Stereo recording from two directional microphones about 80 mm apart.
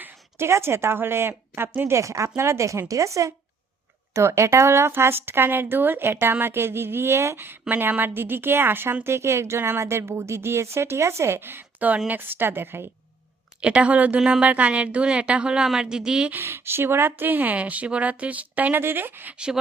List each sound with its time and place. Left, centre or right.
0.0 s a woman's voice: right
2.0 s speech: right
13.6 s a woman's voice: centre
16.3 s speech: right